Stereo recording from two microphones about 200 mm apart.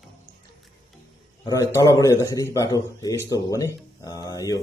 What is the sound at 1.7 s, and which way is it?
A man's voice, 15° left (ahead or behind).